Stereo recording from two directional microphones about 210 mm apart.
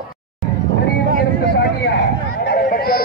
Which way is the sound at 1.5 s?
50° left (ahead or behind).